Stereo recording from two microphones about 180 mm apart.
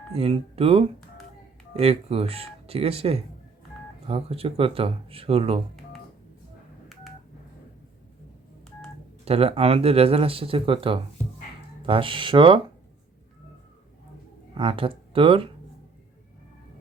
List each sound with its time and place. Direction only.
0.1 s speech: 30° right (ahead or behind)
9.2 s speech: 35° right (ahead or behind)
14.5 s speech: 30° right (ahead or behind)